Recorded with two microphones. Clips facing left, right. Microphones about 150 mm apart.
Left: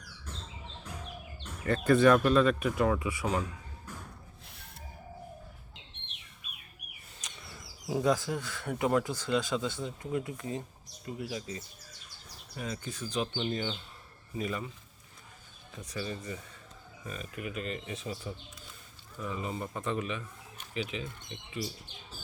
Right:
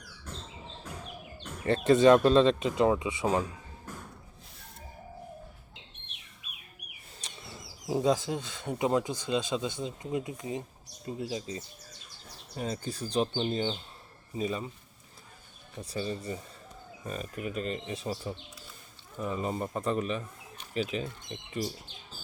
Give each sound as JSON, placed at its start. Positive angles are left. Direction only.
{"t": 1.6, "sound": "speech", "side_deg": -25}
{"t": 7.2, "sound": "bird flight", "side_deg": -30}
{"t": 7.9, "sound": "speech", "side_deg": -25}
{"t": 15.8, "sound": "speech", "side_deg": -30}